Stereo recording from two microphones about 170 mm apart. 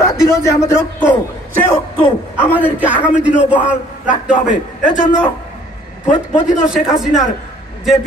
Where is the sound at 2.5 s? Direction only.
10° right (ahead or behind).